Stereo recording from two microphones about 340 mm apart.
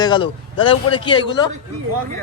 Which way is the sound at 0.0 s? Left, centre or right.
Centre.